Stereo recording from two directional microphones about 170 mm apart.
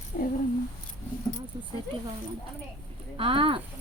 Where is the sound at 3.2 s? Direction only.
30° right (ahead or behind).